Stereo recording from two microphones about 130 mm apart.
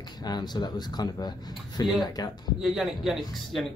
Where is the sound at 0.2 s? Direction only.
35° left (ahead or behind).